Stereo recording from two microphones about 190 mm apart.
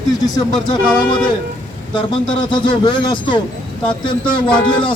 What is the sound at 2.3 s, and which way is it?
Speech, 25° left (ahead or behind).